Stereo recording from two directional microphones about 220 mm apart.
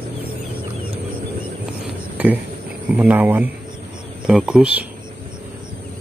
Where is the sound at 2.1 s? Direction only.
5° right (ahead or behind).